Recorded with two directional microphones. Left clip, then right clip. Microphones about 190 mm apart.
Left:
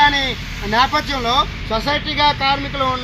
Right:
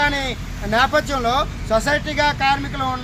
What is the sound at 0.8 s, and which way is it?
Speech, 35° right (ahead or behind).